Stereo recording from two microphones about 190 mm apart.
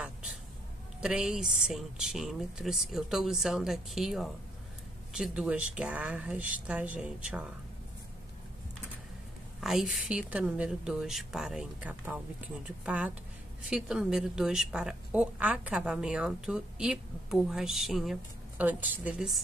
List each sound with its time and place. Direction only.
1.0 s a woman's voice: 5° right (ahead or behind)
9.6 s a woman's voice: centre (ahead or behind)